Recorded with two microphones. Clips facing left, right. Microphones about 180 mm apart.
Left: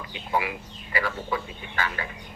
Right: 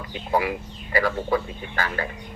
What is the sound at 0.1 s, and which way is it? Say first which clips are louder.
A man's voice: right 4 dB; 40° right (ahead or behind).